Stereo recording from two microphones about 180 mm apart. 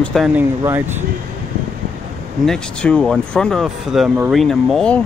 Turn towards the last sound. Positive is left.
turn(degrees=5)  # may be behind; listen again after turning